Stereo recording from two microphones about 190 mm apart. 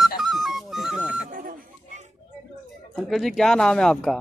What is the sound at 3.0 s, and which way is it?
Speech, centre (ahead or behind).